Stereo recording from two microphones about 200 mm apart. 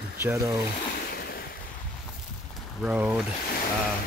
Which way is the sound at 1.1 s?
50° left (ahead or behind).